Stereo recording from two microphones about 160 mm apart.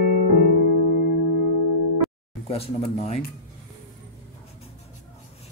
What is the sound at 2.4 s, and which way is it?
Speech, 40° left (ahead or behind).